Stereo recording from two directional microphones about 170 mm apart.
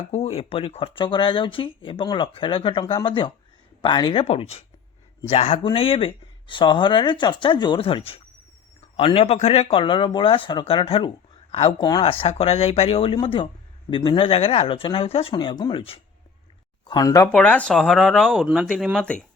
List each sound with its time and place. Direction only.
0.1 s speech: 35° left (ahead or behind)
17.3 s speech: 10° left (ahead or behind)